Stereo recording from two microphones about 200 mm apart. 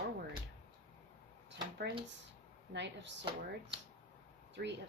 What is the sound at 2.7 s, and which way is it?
Speech, 60° right (ahead or behind).